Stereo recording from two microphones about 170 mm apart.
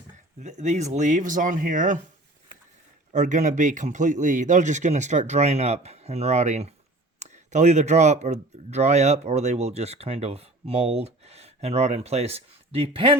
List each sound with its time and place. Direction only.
0.3 s speech: 45° right (ahead or behind)
3.1 s speech: 45° right (ahead or behind); by 13.1 s 30° right (ahead or behind)